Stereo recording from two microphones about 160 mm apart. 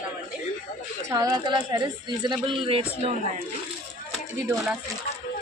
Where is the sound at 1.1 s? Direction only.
25° right (ahead or behind).